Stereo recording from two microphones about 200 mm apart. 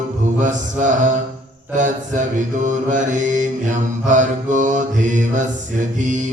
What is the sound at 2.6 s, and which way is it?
Mantra, 40° right (ahead or behind).